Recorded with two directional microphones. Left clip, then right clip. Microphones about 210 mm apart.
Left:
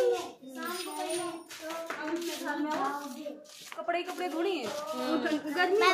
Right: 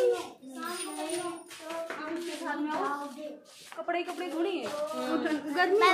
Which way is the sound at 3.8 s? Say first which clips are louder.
Even; 15° left (ahead or behind).